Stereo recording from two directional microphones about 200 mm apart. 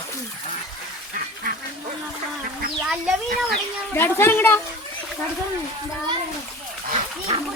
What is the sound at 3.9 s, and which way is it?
Speech, 10° left (ahead or behind).